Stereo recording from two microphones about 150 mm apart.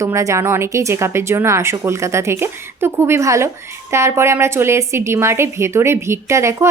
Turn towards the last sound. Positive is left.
turn(degrees=-20)  # may be behind; listen again after turning